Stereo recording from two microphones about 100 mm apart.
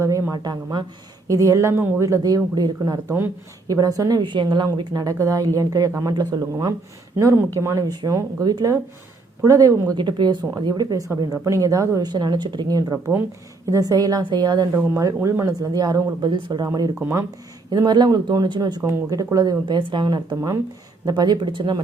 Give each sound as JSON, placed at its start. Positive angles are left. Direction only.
{"t": 0.0, "sound": "a sound", "side_deg": -35}
{"t": 1.3, "sound": "a woman's voice", "side_deg": -35}
{"t": 4.2, "sound": "speech", "side_deg": -50}
{"t": 5.1, "sound": "a woman's voice", "side_deg": -35}
{"t": 10.0, "sound": "a woman's voice", "side_deg": -50}
{"t": 16.6, "sound": "a woman's voice", "side_deg": -35}
{"t": 17.7, "sound": "speech", "side_deg": -45}
{"t": 18.8, "sound": "speech", "side_deg": -25}
{"t": 19.1, "sound": "a woman's voice", "side_deg": -35}
{"t": 19.6, "sound": "speech", "side_deg": -50}
{"t": 20.3, "sound": "a woman's voice", "side_deg": -30}